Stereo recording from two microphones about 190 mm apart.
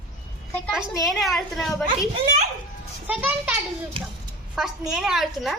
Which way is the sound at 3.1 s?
10° right (ahead or behind).